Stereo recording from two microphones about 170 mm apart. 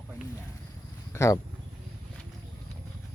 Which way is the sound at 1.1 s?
15° left (ahead or behind).